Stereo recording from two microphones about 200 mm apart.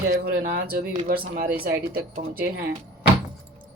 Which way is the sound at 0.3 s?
50° right (ahead or behind).